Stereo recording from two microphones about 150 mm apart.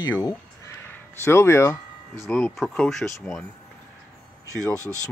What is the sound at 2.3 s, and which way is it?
Speech, 5° left (ahead or behind).